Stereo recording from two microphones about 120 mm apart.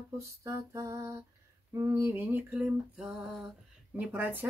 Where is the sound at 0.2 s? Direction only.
25° right (ahead or behind).